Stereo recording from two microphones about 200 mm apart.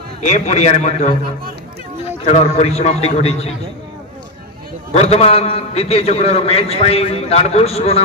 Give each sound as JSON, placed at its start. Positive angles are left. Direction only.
{"t": 0.3, "sound": "a man's voice", "side_deg": 35}
{"t": 2.2, "sound": "a man's voice", "side_deg": 35}
{"t": 4.9, "sound": "a man's voice", "side_deg": 30}